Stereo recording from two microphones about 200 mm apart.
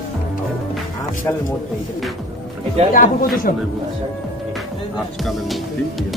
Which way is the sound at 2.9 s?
45° left (ahead or behind).